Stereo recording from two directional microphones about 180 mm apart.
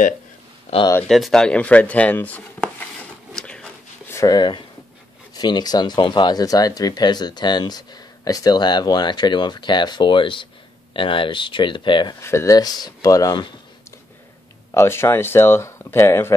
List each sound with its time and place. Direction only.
0.7 s speech: 40° left (ahead or behind)
1.0 s speech: centre (ahead or behind)
3.3 s a sound: 5° left (ahead or behind)
4.2 s speech: 25° left (ahead or behind)
12.2 s speech: 15° left (ahead or behind)
14.7 s speech: 15° left (ahead or behind)